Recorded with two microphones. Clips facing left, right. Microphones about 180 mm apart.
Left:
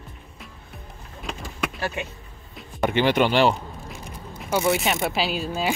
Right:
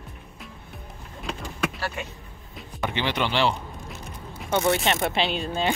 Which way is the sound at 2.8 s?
50° left (ahead or behind).